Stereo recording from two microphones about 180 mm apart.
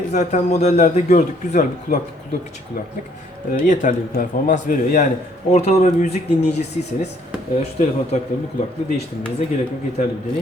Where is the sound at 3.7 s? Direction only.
45° left (ahead or behind).